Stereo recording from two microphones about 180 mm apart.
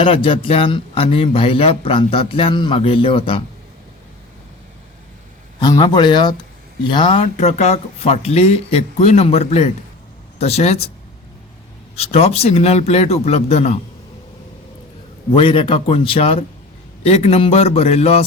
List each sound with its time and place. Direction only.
0.0 s speech: 30° left (ahead or behind)
5.5 s speech: 25° left (ahead or behind)
11.9 s speech: 35° left (ahead or behind)
15.3 s speech: 30° left (ahead or behind)